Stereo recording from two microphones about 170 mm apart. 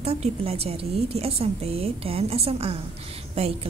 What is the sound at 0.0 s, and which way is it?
A woman's voice, 35° right (ahead or behind).